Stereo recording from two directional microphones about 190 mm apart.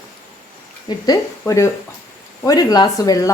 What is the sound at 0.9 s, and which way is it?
A woman's voice, 20° left (ahead or behind).